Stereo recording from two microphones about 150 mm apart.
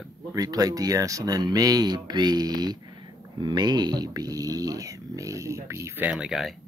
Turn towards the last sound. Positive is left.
turn(degrees=0)  # may be behind; listen again after turning